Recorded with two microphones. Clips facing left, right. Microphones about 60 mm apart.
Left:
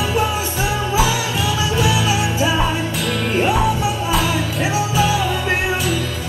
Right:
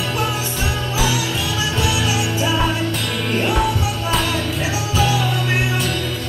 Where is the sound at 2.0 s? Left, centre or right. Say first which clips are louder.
Left 2 dB; left.